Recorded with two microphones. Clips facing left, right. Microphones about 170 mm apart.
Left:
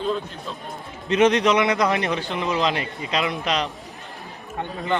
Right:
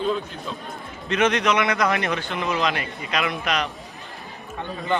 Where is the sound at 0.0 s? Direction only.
Centre (ahead or behind).